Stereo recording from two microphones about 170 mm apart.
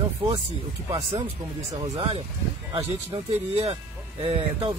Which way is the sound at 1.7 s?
25° right (ahead or behind).